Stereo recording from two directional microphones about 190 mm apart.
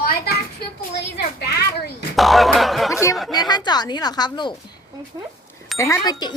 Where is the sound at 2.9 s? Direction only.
15° left (ahead or behind).